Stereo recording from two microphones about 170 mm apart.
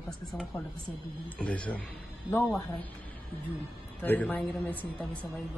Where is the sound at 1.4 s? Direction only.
5° left (ahead or behind).